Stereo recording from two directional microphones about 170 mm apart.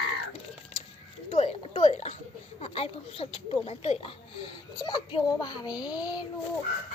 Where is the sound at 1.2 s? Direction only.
35° left (ahead or behind).